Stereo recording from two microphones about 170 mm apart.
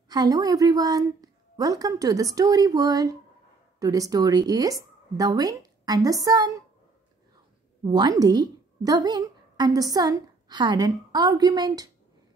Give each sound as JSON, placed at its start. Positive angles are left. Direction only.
{"t": 0.1, "sound": "a woman's voice", "side_deg": -20}
{"t": 7.8, "sound": "a woman's voice", "side_deg": -25}